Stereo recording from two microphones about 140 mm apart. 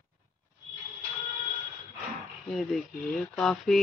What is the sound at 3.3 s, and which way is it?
Speech, centre (ahead or behind).